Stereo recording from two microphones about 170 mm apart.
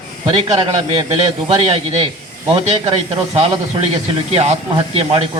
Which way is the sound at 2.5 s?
35° right (ahead or behind).